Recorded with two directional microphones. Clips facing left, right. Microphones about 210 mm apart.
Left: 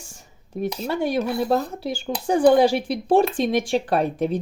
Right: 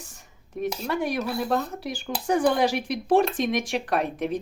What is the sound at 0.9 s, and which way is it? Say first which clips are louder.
Speech: left 5 dB; 30° left (ahead or behind).